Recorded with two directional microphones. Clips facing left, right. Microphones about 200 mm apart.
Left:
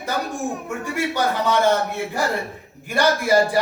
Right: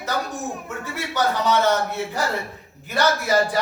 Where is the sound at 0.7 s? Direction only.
10° left (ahead or behind).